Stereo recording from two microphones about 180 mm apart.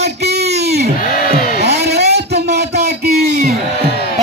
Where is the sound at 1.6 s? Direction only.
65° right (ahead or behind).